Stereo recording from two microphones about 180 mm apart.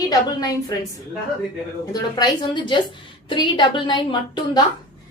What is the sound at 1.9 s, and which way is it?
A woman's voice, 25° left (ahead or behind).